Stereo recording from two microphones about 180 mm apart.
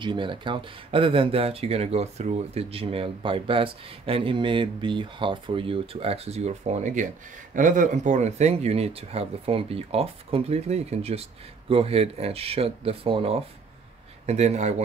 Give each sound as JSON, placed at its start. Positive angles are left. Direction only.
{"t": 0.0, "sound": "speech", "side_deg": -25}